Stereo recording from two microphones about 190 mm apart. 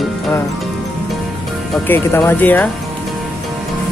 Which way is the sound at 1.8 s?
10° left (ahead or behind).